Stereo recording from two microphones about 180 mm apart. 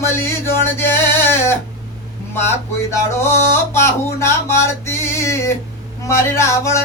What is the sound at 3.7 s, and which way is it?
Music, 15° left (ahead or behind).